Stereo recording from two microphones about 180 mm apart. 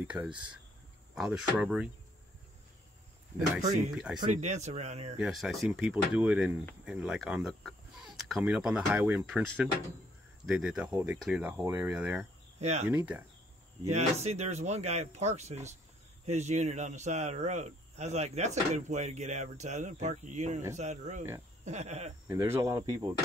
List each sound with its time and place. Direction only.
0.0 s speech: 10° right (ahead or behind)
3.6 s speech: 40° right (ahead or behind)
3.9 s speech: 5° right (ahead or behind)
4.3 s speech: 40° right (ahead or behind)
5.2 s speech: centre (ahead or behind)
10.4 s speech: 5° right (ahead or behind)
12.5 s speech: 40° right (ahead or behind)
12.9 s speech: 5° right (ahead or behind)
13.8 s speech: 40° right (ahead or behind)
22.3 s speech: 15° right (ahead or behind)